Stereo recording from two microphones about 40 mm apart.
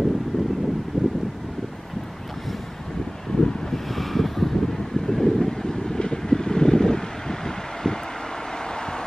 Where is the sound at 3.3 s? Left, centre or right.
Centre.